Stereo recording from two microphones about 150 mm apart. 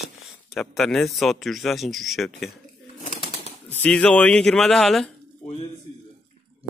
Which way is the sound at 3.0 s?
70° left (ahead or behind).